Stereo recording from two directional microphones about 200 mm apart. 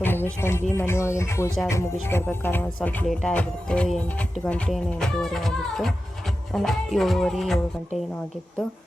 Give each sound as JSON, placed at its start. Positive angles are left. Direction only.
{"t": 0.0, "sound": "speech", "side_deg": 10}